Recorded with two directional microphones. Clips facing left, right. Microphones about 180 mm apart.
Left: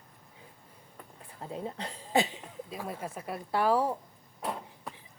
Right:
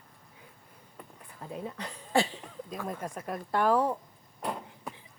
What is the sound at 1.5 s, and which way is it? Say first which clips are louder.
Speech: left 1 dB; 25° left (ahead or behind).